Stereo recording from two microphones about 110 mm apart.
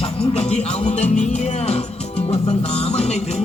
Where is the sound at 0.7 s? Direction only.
80° left.